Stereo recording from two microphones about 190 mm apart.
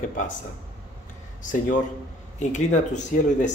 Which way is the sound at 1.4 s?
45° left (ahead or behind).